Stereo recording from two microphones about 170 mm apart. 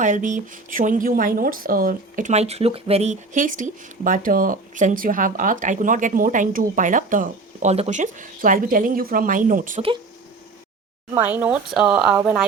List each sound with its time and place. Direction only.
0.0 s speech: 50° right (ahead or behind)
11.1 s a woman's voice: 10° right (ahead or behind)